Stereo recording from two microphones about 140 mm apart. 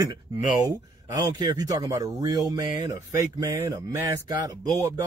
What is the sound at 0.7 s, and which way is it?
Speech, 30° right (ahead or behind).